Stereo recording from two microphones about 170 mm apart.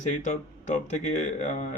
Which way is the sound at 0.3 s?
45° left (ahead or behind).